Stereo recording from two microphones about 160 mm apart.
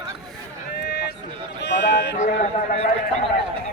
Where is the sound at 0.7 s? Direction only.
90° left.